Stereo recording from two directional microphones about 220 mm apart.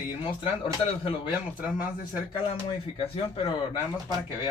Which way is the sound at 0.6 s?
25° left (ahead or behind).